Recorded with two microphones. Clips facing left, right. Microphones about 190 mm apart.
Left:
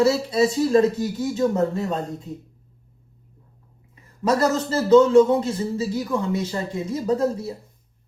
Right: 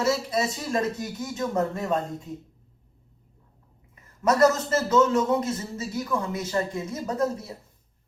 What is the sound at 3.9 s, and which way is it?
A man's voice, 30° left (ahead or behind).